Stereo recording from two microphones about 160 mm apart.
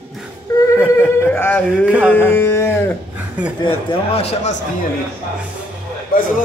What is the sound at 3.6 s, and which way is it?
Speech, 35° left (ahead or behind).